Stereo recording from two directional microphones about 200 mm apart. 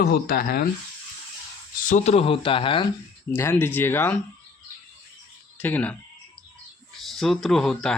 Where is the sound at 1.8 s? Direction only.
35° left (ahead or behind).